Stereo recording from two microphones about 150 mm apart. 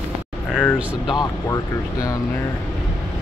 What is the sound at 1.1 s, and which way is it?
Speech, 20° left (ahead or behind).